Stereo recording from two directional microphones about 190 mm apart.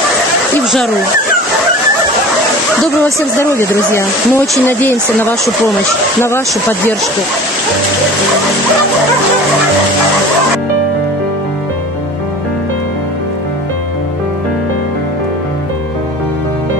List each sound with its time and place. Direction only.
3.3 s speech: 15° left (ahead or behind)